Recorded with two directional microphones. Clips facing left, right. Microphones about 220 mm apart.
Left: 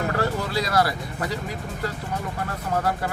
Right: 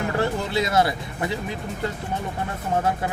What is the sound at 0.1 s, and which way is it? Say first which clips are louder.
Speech: right 1 dB; 25° right (ahead or behind).